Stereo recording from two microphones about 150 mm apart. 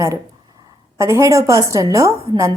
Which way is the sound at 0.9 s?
20° right (ahead or behind).